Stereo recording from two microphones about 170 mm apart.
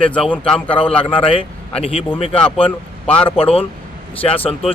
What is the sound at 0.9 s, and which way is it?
Speech, 35° left (ahead or behind).